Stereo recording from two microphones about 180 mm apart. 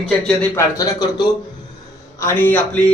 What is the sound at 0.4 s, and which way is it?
A man's voice, 15° left (ahead or behind).